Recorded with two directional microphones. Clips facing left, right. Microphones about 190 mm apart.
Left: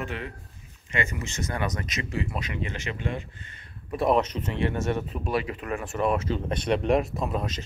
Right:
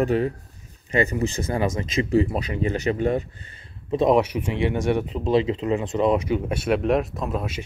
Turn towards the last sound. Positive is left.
turn(degrees=-5)  # may be behind; listen again after turning